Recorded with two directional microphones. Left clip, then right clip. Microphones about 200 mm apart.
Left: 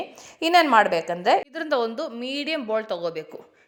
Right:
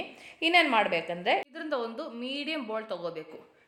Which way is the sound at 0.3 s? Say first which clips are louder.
Left 7 dB; 40° left (ahead or behind).